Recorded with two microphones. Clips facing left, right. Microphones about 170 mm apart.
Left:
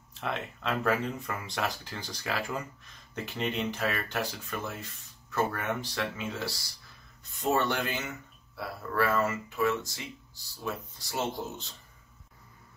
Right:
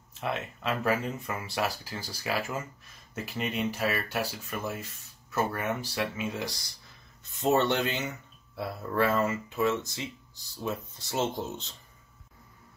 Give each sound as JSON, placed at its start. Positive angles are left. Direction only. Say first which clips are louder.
{"t": 0.2, "sound": "speech", "louder": "right 1 dB", "side_deg": -5}